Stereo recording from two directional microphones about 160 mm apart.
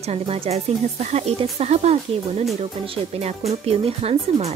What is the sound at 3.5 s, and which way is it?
Speech, 40° right (ahead or behind).